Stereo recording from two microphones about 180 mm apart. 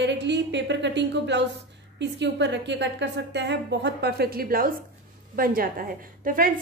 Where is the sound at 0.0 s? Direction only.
75° right (ahead or behind).